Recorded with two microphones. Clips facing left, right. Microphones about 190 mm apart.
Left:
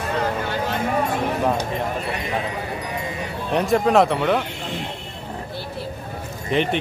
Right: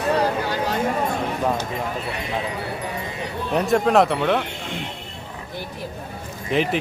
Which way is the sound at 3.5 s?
Centre (ahead or behind).